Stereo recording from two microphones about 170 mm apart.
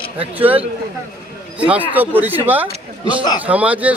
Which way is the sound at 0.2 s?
10° right (ahead or behind).